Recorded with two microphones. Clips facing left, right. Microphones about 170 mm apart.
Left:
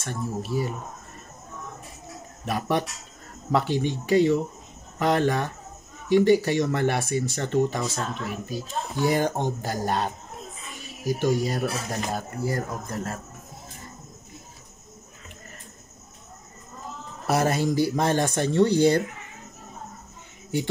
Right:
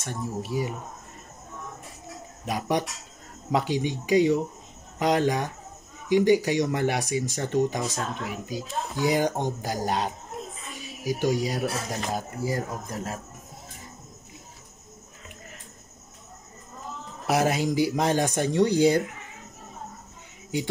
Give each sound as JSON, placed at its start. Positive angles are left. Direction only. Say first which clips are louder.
{"t": 0.0, "sound": "speech", "louder": "left 1 dB", "side_deg": -15}
{"t": 2.4, "sound": "speech", "louder": "left 1 dB", "side_deg": -15}
{"t": 11.1, "sound": "speech", "louder": "left 1 dB", "side_deg": -10}
{"t": 17.3, "sound": "speech", "louder": "left 1 dB", "side_deg": -15}